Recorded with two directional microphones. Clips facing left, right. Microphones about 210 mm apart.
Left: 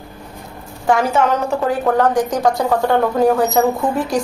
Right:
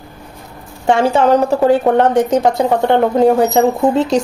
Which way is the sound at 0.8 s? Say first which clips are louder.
Right 4 dB; 30° right (ahead or behind).